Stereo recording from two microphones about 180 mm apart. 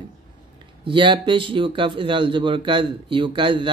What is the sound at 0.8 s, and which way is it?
Mantra, 25° right (ahead or behind).